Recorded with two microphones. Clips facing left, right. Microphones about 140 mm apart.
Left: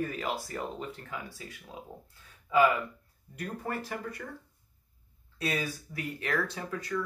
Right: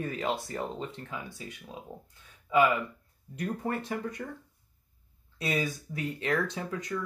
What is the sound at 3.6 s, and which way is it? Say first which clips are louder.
Speech: right 2 dB; 20° right (ahead or behind).